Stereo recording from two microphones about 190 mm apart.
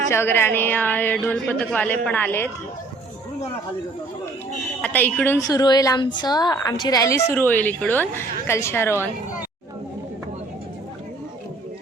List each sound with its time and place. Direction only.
0.1 s a woman's voice: 15° left (ahead or behind)
4.8 s a woman's voice: 10° left (ahead or behind)